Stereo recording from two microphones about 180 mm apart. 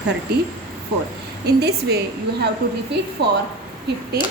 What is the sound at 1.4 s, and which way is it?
Speech, 65° right (ahead or behind).